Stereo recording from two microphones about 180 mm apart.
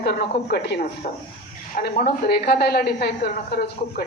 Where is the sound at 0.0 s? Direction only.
65° left (ahead or behind).